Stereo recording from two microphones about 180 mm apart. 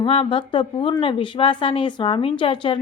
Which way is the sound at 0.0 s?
30° left (ahead or behind).